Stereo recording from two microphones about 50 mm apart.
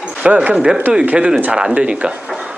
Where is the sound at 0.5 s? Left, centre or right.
Centre.